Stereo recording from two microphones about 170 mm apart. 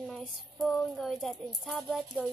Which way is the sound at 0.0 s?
Centre (ahead or behind).